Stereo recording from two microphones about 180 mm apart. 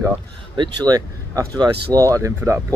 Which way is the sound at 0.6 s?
20° right (ahead or behind).